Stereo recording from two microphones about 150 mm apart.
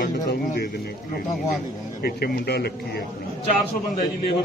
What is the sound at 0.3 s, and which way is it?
Bird, 90° left.